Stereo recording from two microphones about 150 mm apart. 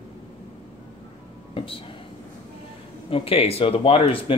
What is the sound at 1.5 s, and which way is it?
Speech, 35° left (ahead or behind).